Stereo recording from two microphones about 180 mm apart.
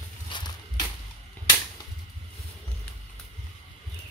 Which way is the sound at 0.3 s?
25° left (ahead or behind).